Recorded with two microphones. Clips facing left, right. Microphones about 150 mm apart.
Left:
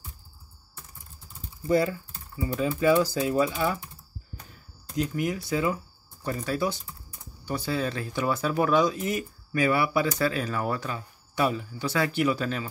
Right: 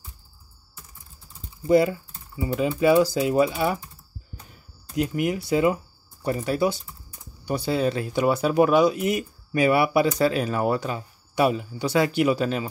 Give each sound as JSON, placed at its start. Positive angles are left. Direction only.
{"t": 1.7, "sound": "speech", "side_deg": -15}
{"t": 4.9, "sound": "speech", "side_deg": -10}